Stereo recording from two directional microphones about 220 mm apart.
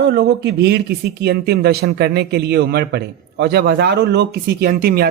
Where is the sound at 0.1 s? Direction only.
50° right (ahead or behind).